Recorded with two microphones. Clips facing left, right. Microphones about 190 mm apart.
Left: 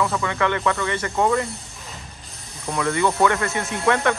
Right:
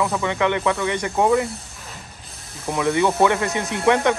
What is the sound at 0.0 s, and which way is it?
Speech, 15° right (ahead or behind).